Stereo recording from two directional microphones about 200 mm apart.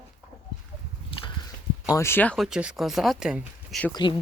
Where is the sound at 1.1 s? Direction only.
25° left (ahead or behind).